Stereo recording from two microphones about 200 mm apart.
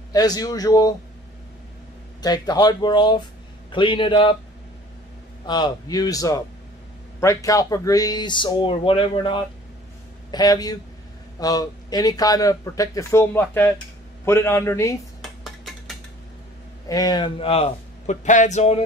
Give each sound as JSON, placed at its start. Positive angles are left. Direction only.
{"t": 0.1, "sound": "speech", "side_deg": 20}
{"t": 2.2, "sound": "speech", "side_deg": 20}
{"t": 5.5, "sound": "speech", "side_deg": 20}
{"t": 15.2, "sound": "dishes", "side_deg": 0}
{"t": 16.9, "sound": "a man's voice", "side_deg": 20}